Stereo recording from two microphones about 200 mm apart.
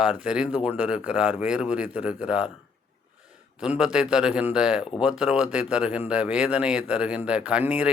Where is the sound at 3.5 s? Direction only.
5° right (ahead or behind).